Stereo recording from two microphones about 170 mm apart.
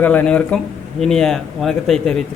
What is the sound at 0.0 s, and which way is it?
A man's voice, 10° left (ahead or behind).